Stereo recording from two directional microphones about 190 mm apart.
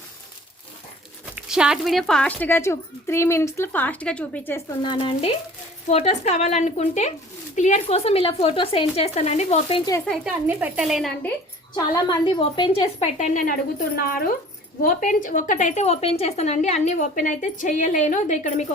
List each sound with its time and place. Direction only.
1.4 s speech: 5° right (ahead or behind)
4.8 s speech: 25° left (ahead or behind)
10.2 s speech: 10° right (ahead or behind)
11.8 s speech: 25° left (ahead or behind); by 18.6 s 40° left (ahead or behind)